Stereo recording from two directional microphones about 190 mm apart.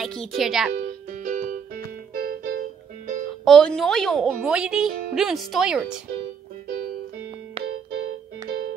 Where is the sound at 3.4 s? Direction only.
5° left (ahead or behind).